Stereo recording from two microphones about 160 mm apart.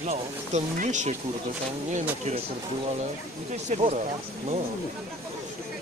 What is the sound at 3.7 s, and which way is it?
Speech, 40° right (ahead or behind).